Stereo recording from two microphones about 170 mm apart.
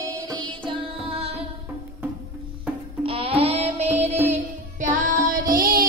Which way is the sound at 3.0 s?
35° right (ahead or behind).